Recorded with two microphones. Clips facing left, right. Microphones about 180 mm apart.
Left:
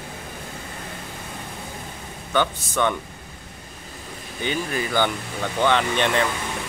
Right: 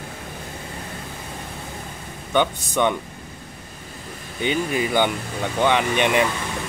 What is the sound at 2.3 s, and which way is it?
Speech, 15° right (ahead or behind).